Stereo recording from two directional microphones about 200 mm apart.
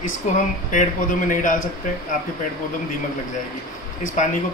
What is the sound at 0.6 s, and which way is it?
Speech, 40° left (ahead or behind).